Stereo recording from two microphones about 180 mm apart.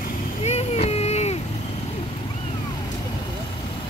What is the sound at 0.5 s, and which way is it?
Vehicle, 35° left (ahead or behind).